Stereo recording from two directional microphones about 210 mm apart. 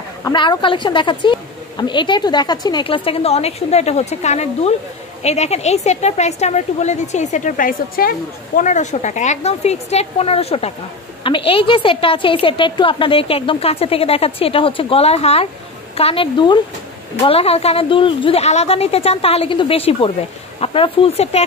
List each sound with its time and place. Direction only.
0.2 s a woman's voice: 20° left (ahead or behind)